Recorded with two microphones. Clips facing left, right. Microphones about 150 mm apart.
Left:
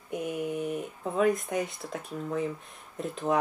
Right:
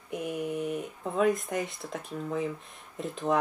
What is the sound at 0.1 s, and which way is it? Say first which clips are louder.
Speech: left 1 dB; centre (ahead or behind).